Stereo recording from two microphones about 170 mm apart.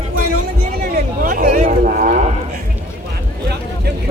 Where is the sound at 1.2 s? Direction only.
55° right (ahead or behind).